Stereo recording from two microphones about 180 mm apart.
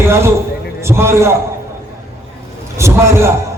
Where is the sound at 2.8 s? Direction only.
15° right (ahead or behind).